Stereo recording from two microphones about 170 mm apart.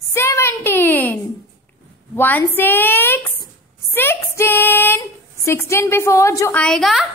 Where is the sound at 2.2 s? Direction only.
10° left (ahead or behind).